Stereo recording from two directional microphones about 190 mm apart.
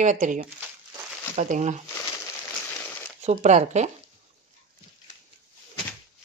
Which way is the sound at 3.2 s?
40° right (ahead or behind).